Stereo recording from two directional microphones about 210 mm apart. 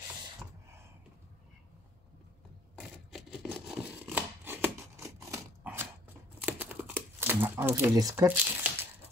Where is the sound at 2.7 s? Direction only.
Centre (ahead or behind).